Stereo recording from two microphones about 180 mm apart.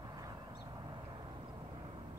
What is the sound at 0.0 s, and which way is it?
Vehicle, 20° right (ahead or behind).